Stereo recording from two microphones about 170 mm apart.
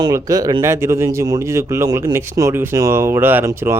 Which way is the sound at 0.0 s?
20° right (ahead or behind).